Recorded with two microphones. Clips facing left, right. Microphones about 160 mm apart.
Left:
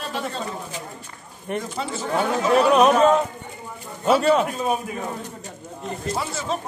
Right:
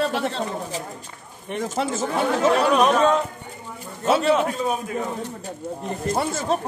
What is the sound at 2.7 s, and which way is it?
Speech, centre (ahead or behind).